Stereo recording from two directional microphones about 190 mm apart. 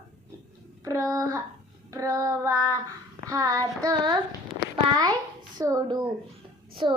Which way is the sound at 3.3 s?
20° right (ahead or behind).